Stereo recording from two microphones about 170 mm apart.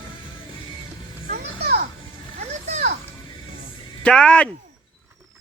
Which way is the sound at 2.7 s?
40° right (ahead or behind).